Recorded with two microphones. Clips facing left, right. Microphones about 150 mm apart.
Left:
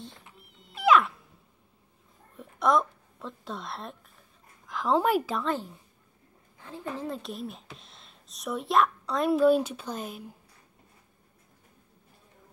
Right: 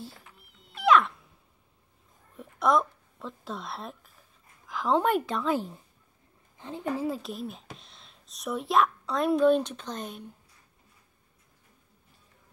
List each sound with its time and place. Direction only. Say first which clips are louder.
0.0 s music: right 2 dB; 5° right (ahead or behind)
2.3 s a sound: even; centre (ahead or behind)
4.6 s a woman's voice: even; centre (ahead or behind)
6.6 s speech: right 4 dB; 20° right (ahead or behind)
7.0 s speech: right 3 dB; 5° right (ahead or behind)